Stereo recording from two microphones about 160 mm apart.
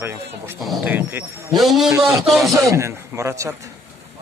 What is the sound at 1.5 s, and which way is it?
Speech, centre (ahead or behind).